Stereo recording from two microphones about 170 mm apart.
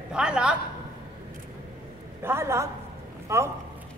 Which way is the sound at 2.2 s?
15° right (ahead or behind).